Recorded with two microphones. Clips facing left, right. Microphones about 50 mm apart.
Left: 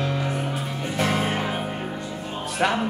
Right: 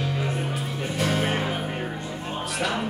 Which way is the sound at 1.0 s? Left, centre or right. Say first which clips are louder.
Left 1 dB; left.